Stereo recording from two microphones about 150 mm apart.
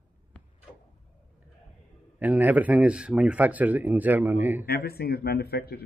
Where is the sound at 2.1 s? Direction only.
10° right (ahead or behind).